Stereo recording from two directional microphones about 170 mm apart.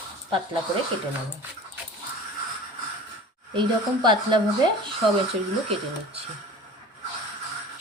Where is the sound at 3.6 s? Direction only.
25° right (ahead or behind).